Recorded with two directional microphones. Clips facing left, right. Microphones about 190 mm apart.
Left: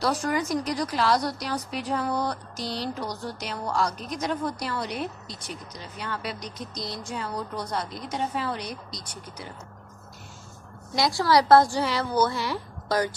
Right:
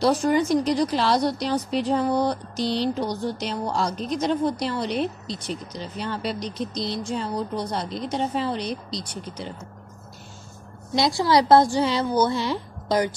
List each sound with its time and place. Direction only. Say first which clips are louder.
0.0 s speech: right 6 dB; 25° right (ahead or behind)
11.0 s speech: right 2 dB; 20° right (ahead or behind)